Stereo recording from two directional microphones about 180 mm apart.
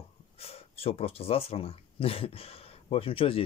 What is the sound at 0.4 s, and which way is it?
Speech, 35° left (ahead or behind).